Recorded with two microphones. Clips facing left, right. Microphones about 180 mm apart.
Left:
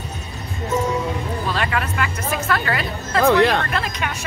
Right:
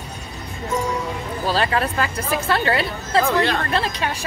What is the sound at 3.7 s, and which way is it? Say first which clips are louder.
Speech: right 2 dB; 30° right (ahead or behind).